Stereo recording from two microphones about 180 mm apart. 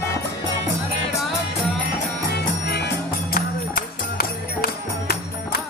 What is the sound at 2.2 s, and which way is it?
Music, 65° left (ahead or behind).